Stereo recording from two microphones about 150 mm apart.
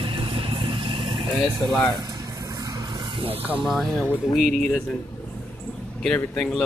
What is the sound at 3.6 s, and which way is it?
Speech, centre (ahead or behind).